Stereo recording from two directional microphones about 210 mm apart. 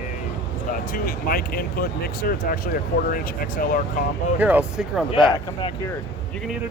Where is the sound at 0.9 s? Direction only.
45° left (ahead or behind).